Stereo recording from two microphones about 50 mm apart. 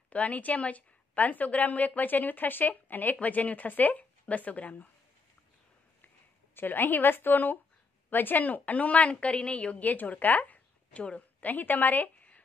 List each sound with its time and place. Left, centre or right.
0.1 s a woman's voice: left
6.5 s a woman's voice: left